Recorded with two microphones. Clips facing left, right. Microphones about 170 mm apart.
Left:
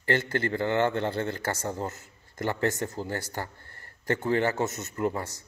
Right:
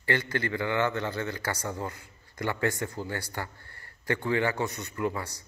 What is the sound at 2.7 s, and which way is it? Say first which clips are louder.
Speech: left 1 dB; 20° left (ahead or behind).